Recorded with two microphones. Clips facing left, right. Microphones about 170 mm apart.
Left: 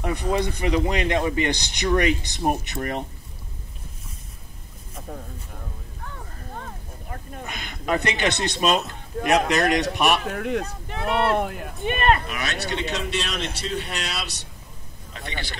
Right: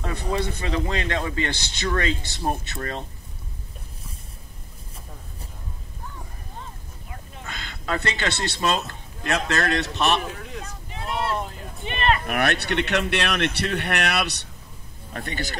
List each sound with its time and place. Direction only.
0.0 s speech: 15° left (ahead or behind)
6.5 s a sound: 55° left (ahead or behind)
7.4 s speech: 15° left (ahead or behind)
10.3 s speech: 65° left (ahead or behind)
11.8 s speech: 45° left (ahead or behind)
12.3 s a man's voice: 60° right (ahead or behind)
15.1 s speech: 45° right (ahead or behind)